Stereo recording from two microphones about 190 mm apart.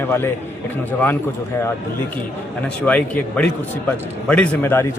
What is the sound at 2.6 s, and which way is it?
A man's voice, 5° left (ahead or behind).